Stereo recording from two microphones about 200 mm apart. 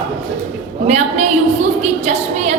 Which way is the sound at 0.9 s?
35° right (ahead or behind).